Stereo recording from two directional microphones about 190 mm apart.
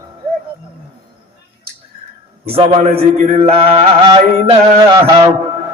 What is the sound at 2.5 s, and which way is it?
Music, 30° right (ahead or behind).